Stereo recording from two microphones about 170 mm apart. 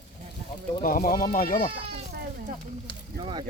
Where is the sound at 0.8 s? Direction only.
55° left (ahead or behind).